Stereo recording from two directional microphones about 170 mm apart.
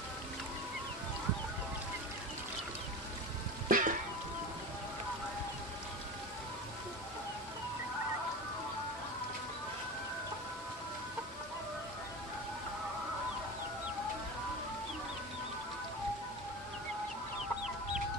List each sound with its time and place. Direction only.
3.6 s music: 50° right (ahead or behind)